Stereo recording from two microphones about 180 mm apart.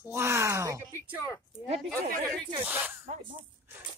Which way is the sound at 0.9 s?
15° left (ahead or behind).